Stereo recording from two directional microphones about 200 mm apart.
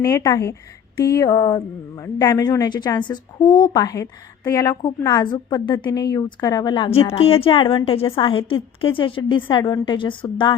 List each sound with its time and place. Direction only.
0.0 s speech: 15° left (ahead or behind)
7.2 s a woman's voice: 30° left (ahead or behind)